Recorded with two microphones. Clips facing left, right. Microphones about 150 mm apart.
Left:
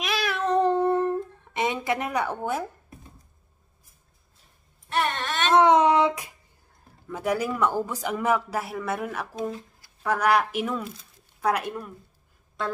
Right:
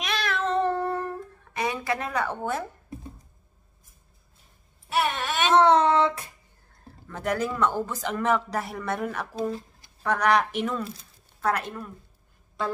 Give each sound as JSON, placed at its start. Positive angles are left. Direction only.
{"t": 0.0, "sound": "cat", "side_deg": 10}
{"t": 4.8, "sound": "wail", "side_deg": -10}
{"t": 5.5, "sound": "a sound", "side_deg": 10}
{"t": 7.1, "sound": "speech", "side_deg": 10}
{"t": 9.3, "sound": "speech", "side_deg": -35}
{"t": 10.0, "sound": "speech", "side_deg": 5}
{"t": 12.6, "sound": "a sound", "side_deg": 0}